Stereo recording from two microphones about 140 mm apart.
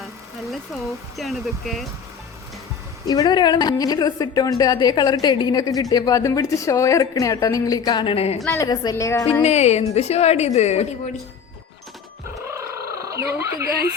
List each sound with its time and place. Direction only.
0.5 s speech: centre (ahead or behind)
3.1 s a woman's voice: 30° left (ahead or behind); by 8.4 s 45° left (ahead or behind)
8.6 s a woman's voice: 30° left (ahead or behind)
9.4 s a woman's voice: 50° left (ahead or behind)
12.3 s cat: 20° right (ahead or behind)